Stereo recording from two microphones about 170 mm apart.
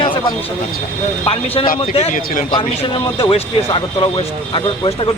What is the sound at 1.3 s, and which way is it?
Speech, 35° left (ahead or behind).